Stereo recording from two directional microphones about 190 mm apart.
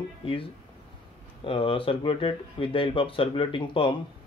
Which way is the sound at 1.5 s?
30° left (ahead or behind).